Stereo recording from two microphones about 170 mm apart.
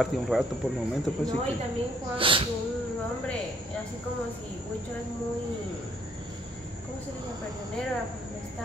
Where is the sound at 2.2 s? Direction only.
30° right (ahead or behind).